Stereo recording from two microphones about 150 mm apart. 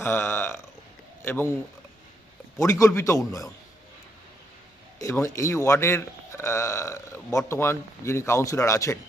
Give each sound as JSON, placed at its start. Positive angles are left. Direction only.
{"t": 0.0, "sound": "a sound", "side_deg": 15}
{"t": 1.2, "sound": "speech", "side_deg": 15}
{"t": 2.6, "sound": "a man's voice", "side_deg": 20}
{"t": 4.9, "sound": "a man's voice", "side_deg": 20}